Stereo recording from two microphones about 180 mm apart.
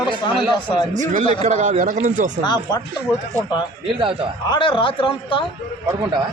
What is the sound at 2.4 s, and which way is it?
Speech, 25° left (ahead or behind).